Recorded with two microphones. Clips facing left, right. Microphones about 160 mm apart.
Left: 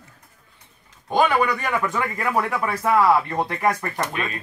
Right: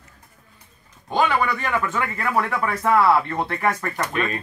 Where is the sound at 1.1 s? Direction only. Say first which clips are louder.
Left 2 dB; 15° left (ahead or behind).